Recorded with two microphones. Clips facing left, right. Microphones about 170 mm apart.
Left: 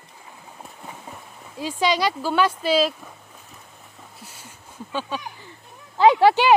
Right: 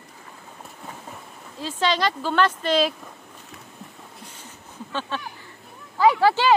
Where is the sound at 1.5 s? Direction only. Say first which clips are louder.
Left 2 dB; 10° left (ahead or behind).